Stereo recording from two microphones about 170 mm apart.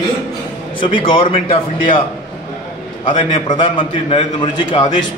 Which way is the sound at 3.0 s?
25° left (ahead or behind).